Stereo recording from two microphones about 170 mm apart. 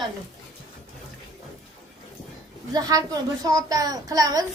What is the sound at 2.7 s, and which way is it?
Speech, 20° right (ahead or behind).